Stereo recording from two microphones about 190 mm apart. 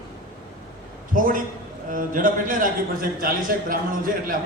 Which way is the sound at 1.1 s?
45° right (ahead or behind).